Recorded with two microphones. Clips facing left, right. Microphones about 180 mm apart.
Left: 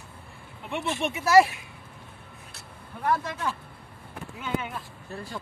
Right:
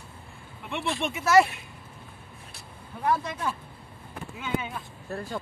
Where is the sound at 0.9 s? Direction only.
10° left (ahead or behind).